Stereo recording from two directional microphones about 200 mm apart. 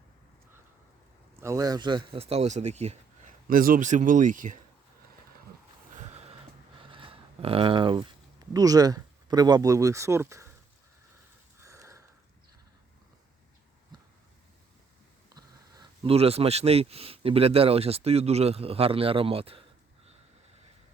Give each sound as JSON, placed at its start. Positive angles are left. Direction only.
{"t": 1.4, "sound": "speech", "side_deg": -15}
{"t": 3.4, "sound": "speech", "side_deg": -45}
{"t": 5.9, "sound": "a sound", "side_deg": -35}
{"t": 6.8, "sound": "speech", "side_deg": -25}
{"t": 11.6, "sound": "sniff", "side_deg": -15}
{"t": 13.9, "sound": "a sound", "side_deg": -20}
{"t": 15.4, "sound": "speech", "side_deg": -20}